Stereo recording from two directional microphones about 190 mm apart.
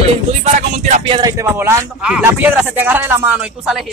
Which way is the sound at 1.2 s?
15° right (ahead or behind).